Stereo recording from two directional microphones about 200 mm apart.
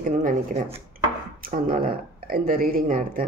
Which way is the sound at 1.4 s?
45° right (ahead or behind).